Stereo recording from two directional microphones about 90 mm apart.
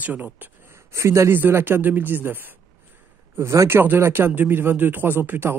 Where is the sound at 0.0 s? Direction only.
20° right (ahead or behind).